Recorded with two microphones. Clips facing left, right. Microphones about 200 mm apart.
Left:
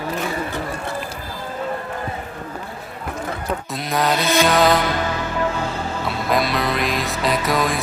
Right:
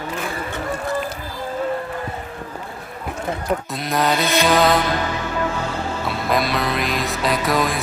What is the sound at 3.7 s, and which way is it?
Music, centre (ahead or behind).